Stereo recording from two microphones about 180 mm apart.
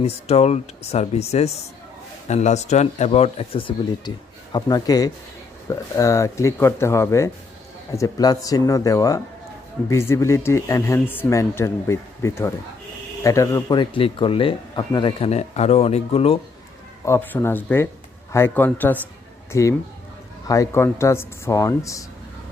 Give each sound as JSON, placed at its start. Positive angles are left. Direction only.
{"t": 0.0, "sound": "speech", "side_deg": 35}
{"t": 17.1, "sound": "speech", "side_deg": 10}